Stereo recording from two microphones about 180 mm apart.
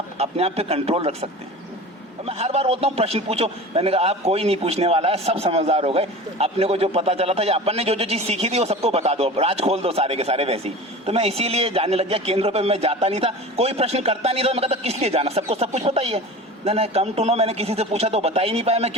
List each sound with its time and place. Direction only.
0.2 s a man's voice: 35° right (ahead or behind)